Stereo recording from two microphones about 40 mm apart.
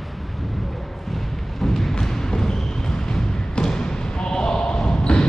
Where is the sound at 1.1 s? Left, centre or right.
Centre.